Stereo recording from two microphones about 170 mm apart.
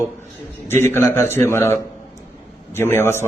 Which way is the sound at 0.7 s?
15° left (ahead or behind).